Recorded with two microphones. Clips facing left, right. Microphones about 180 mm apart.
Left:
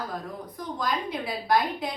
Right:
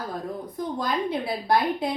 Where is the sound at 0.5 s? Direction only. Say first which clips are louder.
Right 3 dB; 30° right (ahead or behind).